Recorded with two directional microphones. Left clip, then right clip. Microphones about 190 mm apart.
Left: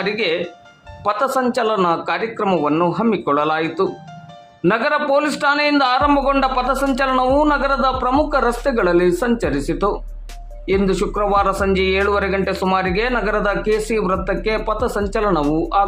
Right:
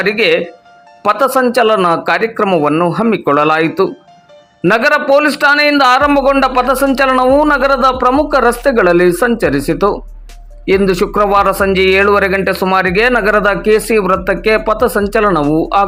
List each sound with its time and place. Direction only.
0.0 s a man's voice: 25° right (ahead or behind)